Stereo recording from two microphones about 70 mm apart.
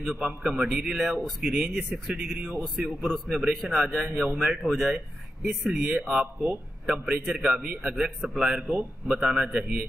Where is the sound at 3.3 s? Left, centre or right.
Right.